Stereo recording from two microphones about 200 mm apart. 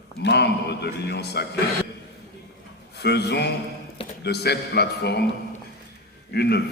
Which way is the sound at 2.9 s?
55° left (ahead or behind).